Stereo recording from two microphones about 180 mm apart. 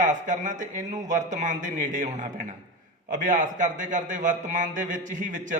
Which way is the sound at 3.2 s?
45° right (ahead or behind).